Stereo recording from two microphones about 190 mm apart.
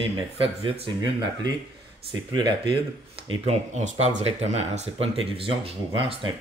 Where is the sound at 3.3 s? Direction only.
35° right (ahead or behind).